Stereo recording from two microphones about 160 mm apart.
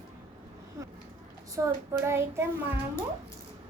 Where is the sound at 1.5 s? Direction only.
20° right (ahead or behind).